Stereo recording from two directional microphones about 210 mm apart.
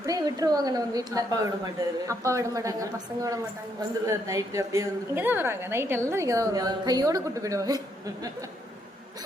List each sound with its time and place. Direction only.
0.0 s a woman's voice: 15° right (ahead or behind)